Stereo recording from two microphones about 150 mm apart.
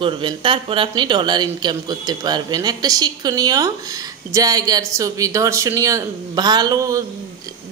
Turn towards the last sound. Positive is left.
turn(degrees=-25)  # may be behind; listen again after turning